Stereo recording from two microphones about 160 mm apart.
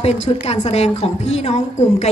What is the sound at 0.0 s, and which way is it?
A woman's voice, 45° left (ahead or behind).